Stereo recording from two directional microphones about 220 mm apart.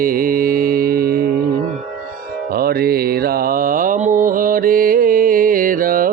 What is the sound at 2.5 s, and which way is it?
Mantra, 45° right (ahead or behind).